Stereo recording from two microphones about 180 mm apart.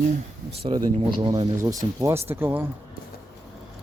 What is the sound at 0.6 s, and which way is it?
Speech, 25° right (ahead or behind).